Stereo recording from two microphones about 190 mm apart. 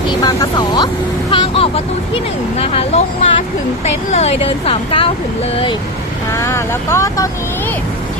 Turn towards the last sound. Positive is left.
turn(degrees=15)  # may be behind; listen again after turning